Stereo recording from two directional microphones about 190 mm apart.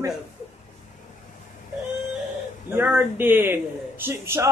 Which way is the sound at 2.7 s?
10° right (ahead or behind).